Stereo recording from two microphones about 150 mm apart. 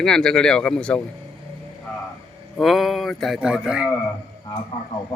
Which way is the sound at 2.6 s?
Centre (ahead or behind).